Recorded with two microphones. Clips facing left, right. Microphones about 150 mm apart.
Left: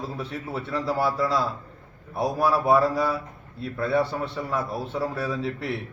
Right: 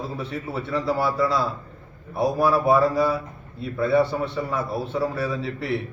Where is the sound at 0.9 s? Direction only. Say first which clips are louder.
Right 1 dB; 10° right (ahead or behind).